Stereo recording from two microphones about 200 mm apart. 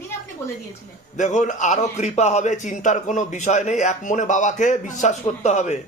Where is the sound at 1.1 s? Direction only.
35° left (ahead or behind).